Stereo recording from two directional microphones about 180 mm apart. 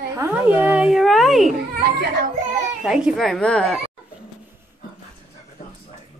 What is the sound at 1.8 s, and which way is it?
Speech, 65° right (ahead or behind).